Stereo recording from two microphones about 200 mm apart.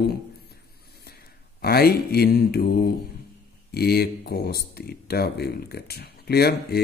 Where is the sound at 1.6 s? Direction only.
50° left (ahead or behind).